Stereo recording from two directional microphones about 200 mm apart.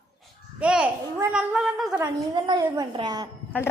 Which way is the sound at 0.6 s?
5° right (ahead or behind).